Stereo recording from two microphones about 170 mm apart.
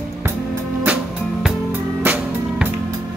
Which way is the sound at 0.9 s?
10° right (ahead or behind).